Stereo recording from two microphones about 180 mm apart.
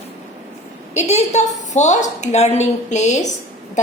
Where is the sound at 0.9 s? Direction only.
35° left (ahead or behind).